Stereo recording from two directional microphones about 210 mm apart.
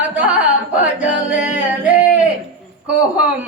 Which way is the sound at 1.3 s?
5° right (ahead or behind).